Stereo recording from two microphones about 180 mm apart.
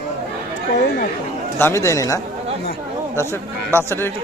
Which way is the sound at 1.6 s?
15° left (ahead or behind).